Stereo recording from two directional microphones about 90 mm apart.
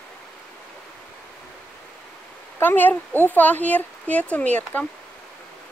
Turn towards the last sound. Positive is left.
turn(degrees=15)  # may be behind; listen again after turning